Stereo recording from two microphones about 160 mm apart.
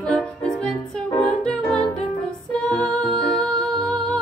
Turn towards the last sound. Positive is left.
turn(degrees=5)  # may be behind; listen again after turning